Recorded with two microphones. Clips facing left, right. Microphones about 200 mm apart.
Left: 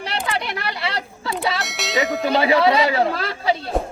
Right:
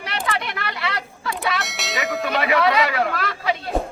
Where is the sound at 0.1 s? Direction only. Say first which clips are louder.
Even; 30° left (ahead or behind).